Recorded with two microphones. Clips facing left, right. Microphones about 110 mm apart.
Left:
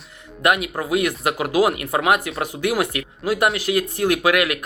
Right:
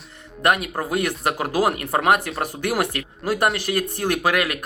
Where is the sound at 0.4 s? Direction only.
40° right (ahead or behind).